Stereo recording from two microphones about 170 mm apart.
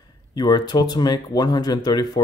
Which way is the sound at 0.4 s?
25° left (ahead or behind).